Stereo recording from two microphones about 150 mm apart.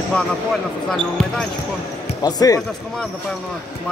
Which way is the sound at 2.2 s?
25° left (ahead or behind).